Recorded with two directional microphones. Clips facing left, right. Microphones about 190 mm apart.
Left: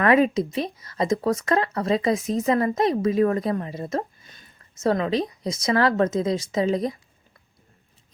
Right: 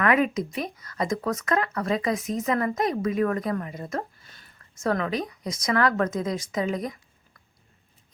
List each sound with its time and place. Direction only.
0.0 s speech: 30° left (ahead or behind)